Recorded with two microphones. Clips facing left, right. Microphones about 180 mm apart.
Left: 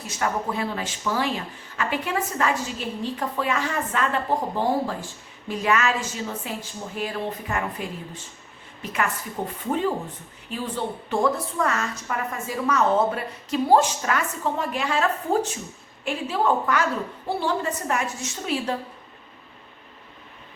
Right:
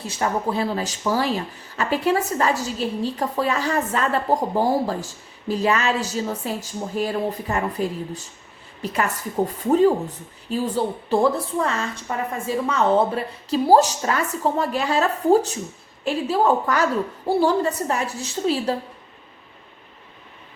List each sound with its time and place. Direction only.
0.0 s a woman's voice: 30° right (ahead or behind)
10.5 s speech: 35° right (ahead or behind)